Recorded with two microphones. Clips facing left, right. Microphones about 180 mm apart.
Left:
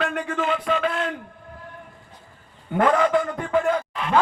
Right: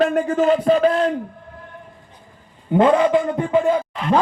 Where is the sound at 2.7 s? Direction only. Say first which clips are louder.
Right 5 dB; 20° right (ahead or behind).